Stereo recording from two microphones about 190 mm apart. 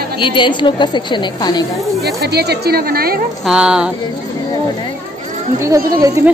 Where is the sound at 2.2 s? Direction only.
60° right (ahead or behind).